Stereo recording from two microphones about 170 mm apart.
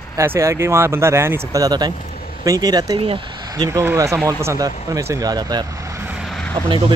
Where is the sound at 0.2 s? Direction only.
15° right (ahead or behind).